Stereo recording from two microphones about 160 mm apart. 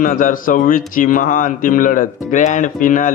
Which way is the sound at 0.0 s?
55° left (ahead or behind).